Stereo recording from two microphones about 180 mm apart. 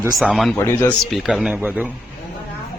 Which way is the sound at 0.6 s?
15° left (ahead or behind).